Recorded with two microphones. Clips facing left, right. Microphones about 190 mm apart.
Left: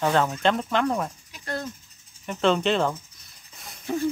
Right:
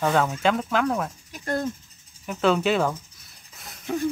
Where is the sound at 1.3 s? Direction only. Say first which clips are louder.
Right 5 dB; 50° right (ahead or behind).